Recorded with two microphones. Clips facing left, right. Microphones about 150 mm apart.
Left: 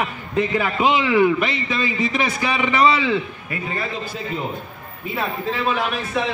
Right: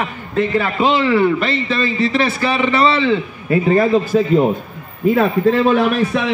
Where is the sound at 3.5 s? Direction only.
40° right (ahead or behind).